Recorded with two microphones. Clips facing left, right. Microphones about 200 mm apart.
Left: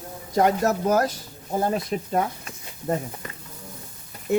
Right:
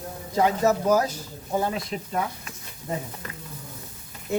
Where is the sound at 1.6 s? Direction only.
40° left (ahead or behind).